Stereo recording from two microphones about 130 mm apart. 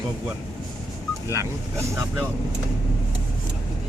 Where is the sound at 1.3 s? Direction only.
20° right (ahead or behind).